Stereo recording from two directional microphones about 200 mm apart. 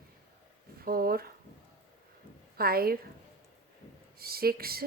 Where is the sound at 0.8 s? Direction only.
50° right (ahead or behind).